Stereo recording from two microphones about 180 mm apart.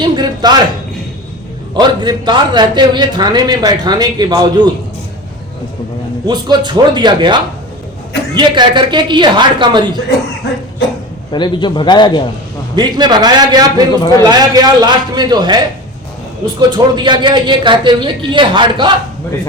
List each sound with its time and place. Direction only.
0.0 s a man's voice: 25° right (ahead or behind)
1.7 s a man's voice: 25° right (ahead or behind)
6.2 s a man's voice: 25° right (ahead or behind)
11.3 s a man's voice: 25° left (ahead or behind)
12.7 s a man's voice: 25° right (ahead or behind)